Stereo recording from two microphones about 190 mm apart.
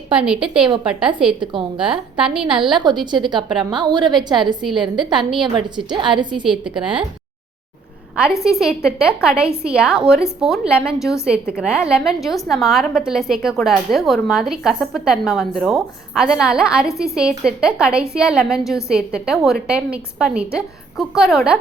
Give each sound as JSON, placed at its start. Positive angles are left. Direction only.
{"t": 0.1, "sound": "a woman's voice", "side_deg": -5}
{"t": 1.4, "sound": "a woman's voice", "side_deg": -25}
{"t": 1.9, "sound": "a woman's voice", "side_deg": -5}
{"t": 2.6, "sound": "a woman's voice", "side_deg": -25}
{"t": 3.3, "sound": "a woman's voice", "side_deg": 0}
{"t": 3.7, "sound": "a woman's voice", "side_deg": -25}
{"t": 6.4, "sound": "a woman's voice", "side_deg": -5}
{"t": 8.1, "sound": "a woman's voice", "side_deg": -5}